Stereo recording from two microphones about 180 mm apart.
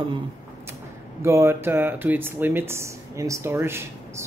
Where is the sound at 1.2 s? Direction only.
15° right (ahead or behind).